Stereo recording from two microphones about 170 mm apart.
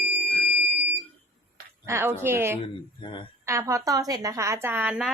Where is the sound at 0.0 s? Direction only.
10° right (ahead or behind).